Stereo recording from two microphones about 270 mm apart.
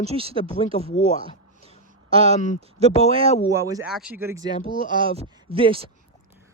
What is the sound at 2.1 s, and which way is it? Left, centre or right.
Speech, right.